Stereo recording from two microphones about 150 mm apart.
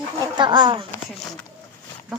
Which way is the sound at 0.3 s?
30° right (ahead or behind).